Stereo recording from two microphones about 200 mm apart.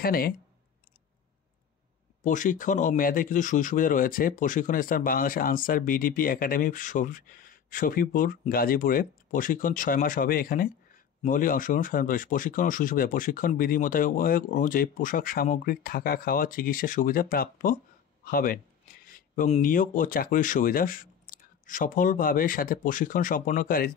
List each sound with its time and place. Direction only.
0.0 s speech: 50° left (ahead or behind)
2.2 s speech: 40° left (ahead or behind)